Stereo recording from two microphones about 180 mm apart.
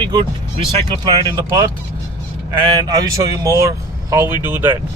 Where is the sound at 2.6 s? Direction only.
25° right (ahead or behind).